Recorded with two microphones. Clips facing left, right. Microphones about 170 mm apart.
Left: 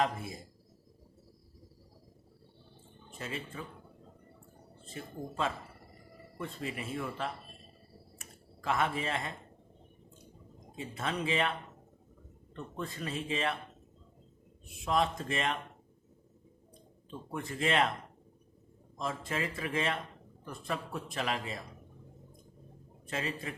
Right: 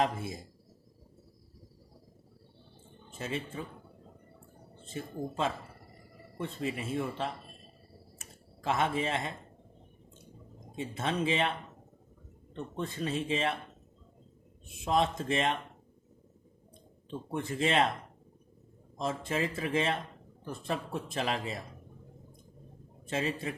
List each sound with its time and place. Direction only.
0.0 s a man's voice: 25° right (ahead or behind)
3.1 s speech: 25° right (ahead or behind)
4.8 s a man's voice: 25° right (ahead or behind)
8.2 s a sound: 25° right (ahead or behind)
10.8 s a man's voice: 25° right (ahead or behind)
12.5 s a man's voice: 20° right (ahead or behind)
14.8 s a man's voice: 20° right (ahead or behind)
17.1 s a man's voice: 25° right (ahead or behind)
19.0 s a man's voice: 25° right (ahead or behind)
23.0 s a man's voice: 25° right (ahead or behind)